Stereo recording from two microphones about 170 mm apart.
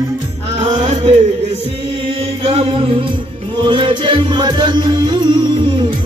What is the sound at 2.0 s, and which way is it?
Chant, 35° right (ahead or behind).